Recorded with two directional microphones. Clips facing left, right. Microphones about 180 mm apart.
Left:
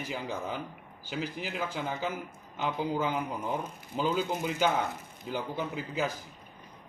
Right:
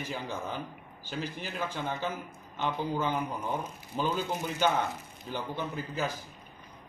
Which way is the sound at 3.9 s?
10° left (ahead or behind).